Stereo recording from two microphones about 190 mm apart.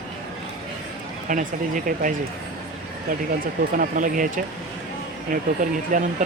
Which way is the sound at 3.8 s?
45° right (ahead or behind).